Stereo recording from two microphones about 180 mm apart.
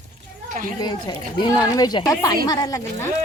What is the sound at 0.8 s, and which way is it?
Speech, 25° left (ahead or behind).